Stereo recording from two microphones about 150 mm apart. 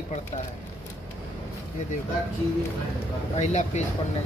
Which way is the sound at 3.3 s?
50° left (ahead or behind).